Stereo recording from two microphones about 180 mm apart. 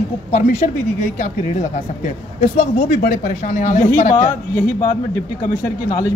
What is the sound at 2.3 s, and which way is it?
A woman's voice, 40° left (ahead or behind).